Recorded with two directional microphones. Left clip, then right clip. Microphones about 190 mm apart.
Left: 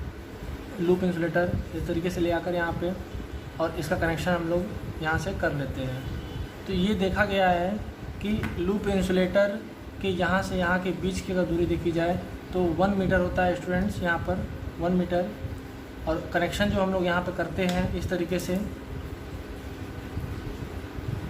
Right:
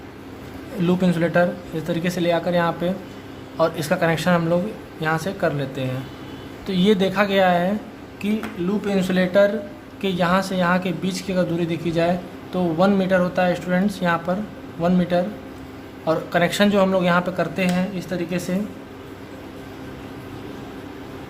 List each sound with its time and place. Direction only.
0.9 s speech: 35° right (ahead or behind)
6.7 s speech: 30° right (ahead or behind)
18.1 s speech: 20° right (ahead or behind)